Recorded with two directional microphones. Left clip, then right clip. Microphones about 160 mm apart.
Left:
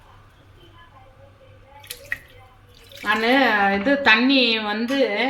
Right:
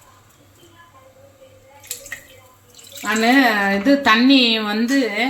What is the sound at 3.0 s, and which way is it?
A woman's voice, 60° right (ahead or behind).